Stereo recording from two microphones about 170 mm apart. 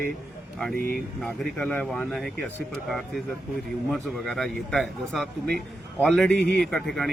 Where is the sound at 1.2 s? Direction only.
Centre (ahead or behind).